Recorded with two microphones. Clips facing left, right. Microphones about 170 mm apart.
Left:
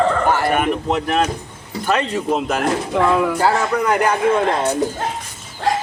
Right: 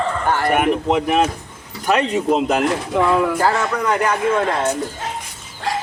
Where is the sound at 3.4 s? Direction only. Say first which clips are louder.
Left 1 dB; 10° left (ahead or behind).